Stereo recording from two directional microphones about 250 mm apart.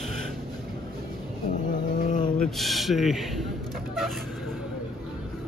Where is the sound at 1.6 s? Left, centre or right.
Left.